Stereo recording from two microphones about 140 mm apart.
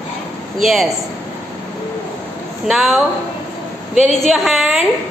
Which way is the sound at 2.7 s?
Centre (ahead or behind).